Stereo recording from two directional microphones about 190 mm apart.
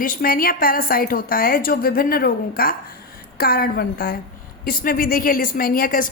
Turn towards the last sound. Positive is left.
turn(degrees=45)  # may be behind; listen again after turning